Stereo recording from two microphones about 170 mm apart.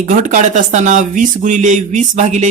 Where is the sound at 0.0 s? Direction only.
50° right (ahead or behind).